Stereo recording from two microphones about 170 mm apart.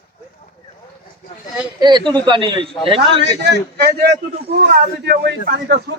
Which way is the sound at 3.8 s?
70° right (ahead or behind).